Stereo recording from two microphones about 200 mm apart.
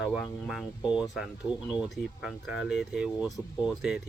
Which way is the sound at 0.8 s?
20° left (ahead or behind).